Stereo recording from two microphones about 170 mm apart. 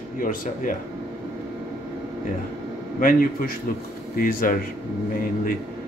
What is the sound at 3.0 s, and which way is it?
A man's voice, 55° left (ahead or behind).